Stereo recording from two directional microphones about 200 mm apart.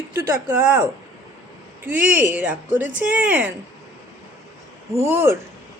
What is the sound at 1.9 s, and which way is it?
Speech, 10° right (ahead or behind).